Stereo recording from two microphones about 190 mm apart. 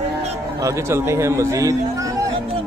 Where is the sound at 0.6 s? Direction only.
15° right (ahead or behind).